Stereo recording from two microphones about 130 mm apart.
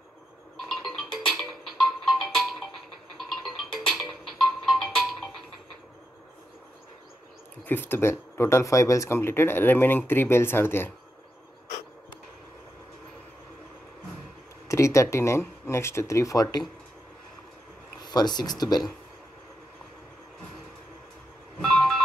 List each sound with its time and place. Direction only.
0.7 s music: 5° left (ahead or behind)
7.6 s speech: 15° left (ahead or behind)
14.7 s speech: 25° left (ahead or behind)
18.1 s speech: 30° left (ahead or behind)
21.5 s vehicle: 5° left (ahead or behind)